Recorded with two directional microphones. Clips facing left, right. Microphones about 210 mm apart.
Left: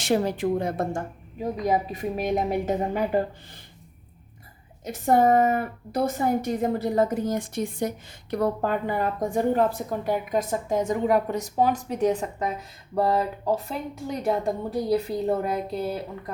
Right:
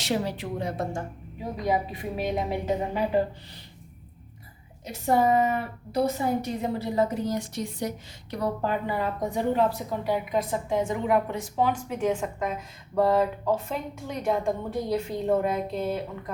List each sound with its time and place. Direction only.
0.0 s a woman's voice: 50° left (ahead or behind)
4.9 s a woman's voice: 50° left (ahead or behind)